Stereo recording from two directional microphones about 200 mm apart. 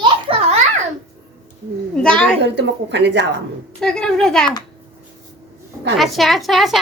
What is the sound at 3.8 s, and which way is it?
Speech, 5° left (ahead or behind).